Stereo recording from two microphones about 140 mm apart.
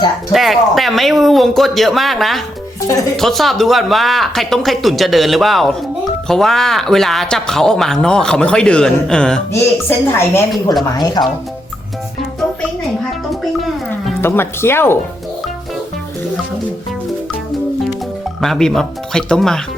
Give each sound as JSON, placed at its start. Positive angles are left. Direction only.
{"t": 0.3, "sound": "speech", "side_deg": 0}
{"t": 2.8, "sound": "speech", "side_deg": 25}
{"t": 3.2, "sound": "speech", "side_deg": 0}
{"t": 9.5, "sound": "a woman's voice", "side_deg": 15}
{"t": 10.8, "sound": "speech", "side_deg": 30}
{"t": 13.6, "sound": "music", "side_deg": 0}
{"t": 14.2, "sound": "a woman's voice", "side_deg": 15}
{"t": 18.3, "sound": "speech", "side_deg": 0}